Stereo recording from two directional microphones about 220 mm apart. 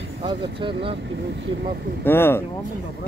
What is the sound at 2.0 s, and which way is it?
Speech, 10° left (ahead or behind).